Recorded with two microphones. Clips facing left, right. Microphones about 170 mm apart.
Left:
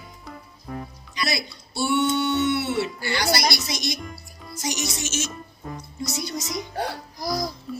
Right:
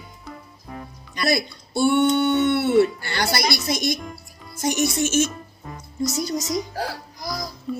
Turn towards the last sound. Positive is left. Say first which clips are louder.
# right 5 dB
turn(degrees=0)  # may be behind; listen again after turning